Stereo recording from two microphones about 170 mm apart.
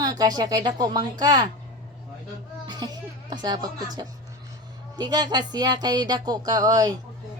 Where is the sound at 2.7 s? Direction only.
25° right (ahead or behind).